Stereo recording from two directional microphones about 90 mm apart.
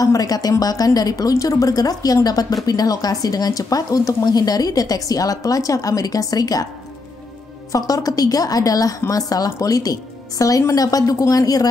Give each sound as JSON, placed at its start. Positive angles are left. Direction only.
{"t": 0.0, "sound": "a woman's voice", "side_deg": 40}
{"t": 7.7, "sound": "a woman's voice", "side_deg": 45}